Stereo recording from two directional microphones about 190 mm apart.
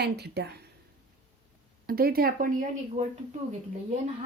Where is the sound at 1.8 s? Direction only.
50° right (ahead or behind).